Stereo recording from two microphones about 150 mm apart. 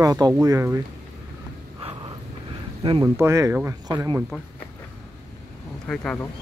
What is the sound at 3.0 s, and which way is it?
Speech, 20° right (ahead or behind).